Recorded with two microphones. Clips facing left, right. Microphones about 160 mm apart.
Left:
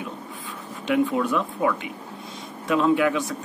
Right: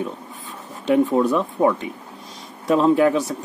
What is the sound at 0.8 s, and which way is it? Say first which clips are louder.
Speech: right 5 dB; 35° right (ahead or behind).